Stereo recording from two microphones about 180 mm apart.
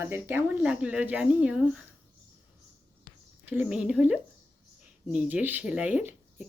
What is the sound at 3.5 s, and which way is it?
Speech, 10° right (ahead or behind).